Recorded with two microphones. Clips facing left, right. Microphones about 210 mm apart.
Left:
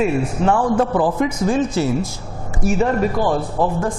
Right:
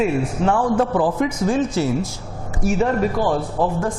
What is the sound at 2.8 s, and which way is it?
A man's voice, 25° left (ahead or behind).